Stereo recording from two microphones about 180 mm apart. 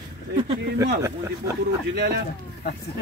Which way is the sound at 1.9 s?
65° right (ahead or behind).